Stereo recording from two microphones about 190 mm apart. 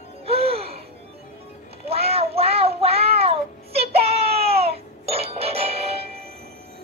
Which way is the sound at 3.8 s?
30° right (ahead or behind).